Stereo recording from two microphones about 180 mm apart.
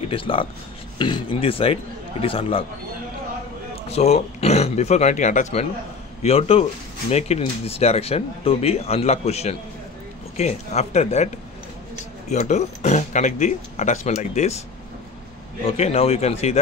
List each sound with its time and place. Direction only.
0.1 s speech: 30° left (ahead or behind)
3.9 s speech: 35° left (ahead or behind)
12.3 s speech: 40° left (ahead or behind)
15.6 s speech: 35° left (ahead or behind)